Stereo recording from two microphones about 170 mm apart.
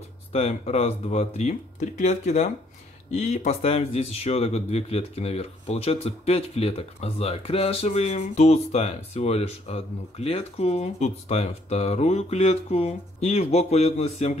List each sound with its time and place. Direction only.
0.3 s speech: 40° left (ahead or behind)